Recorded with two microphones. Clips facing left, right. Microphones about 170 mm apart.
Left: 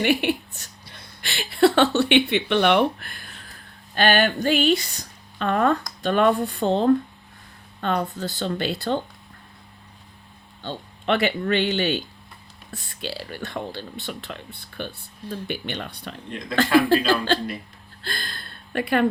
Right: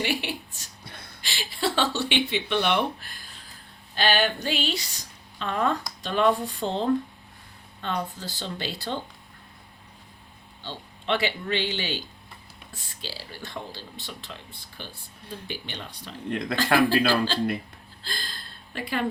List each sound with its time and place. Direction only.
0.0 s a sound: 60° left (ahead or behind)
3.9 s a woman's voice: 55° left (ahead or behind)
10.6 s a woman's voice: 55° left (ahead or behind)
16.3 s speech: 60° right (ahead or behind)
17.1 s a woman's voice: 60° left (ahead or behind)